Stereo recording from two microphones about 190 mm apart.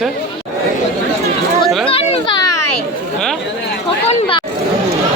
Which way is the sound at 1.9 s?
30° left (ahead or behind).